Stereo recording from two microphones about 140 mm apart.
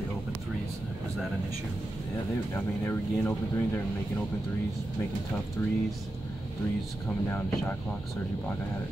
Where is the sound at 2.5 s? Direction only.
15° left (ahead or behind).